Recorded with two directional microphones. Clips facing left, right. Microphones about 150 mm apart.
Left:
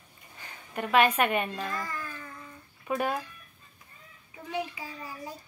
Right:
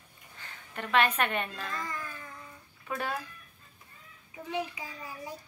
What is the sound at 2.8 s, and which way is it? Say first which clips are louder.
Speech: left 5 dB; 20° left (ahead or behind).